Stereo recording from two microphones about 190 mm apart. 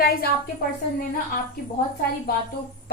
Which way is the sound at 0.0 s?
55° left (ahead or behind).